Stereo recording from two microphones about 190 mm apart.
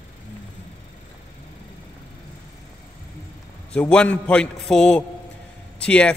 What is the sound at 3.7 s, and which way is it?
A man's voice, 5° left (ahead or behind).